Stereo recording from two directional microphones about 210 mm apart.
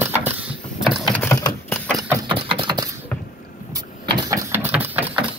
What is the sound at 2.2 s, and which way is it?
Engine, 25° right (ahead or behind).